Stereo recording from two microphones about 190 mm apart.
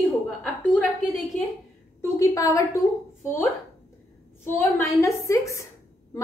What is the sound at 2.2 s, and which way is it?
Speech, 15° left (ahead or behind).